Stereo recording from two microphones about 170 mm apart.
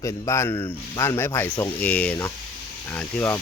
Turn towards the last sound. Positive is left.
turn(degrees=10)  # may be behind; listen again after turning